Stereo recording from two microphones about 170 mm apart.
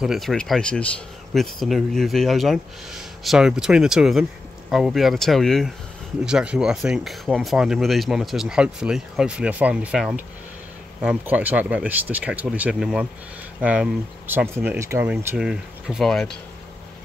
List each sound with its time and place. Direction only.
0.0 s speech: centre (ahead or behind)
15.3 s speech: 5° right (ahead or behind)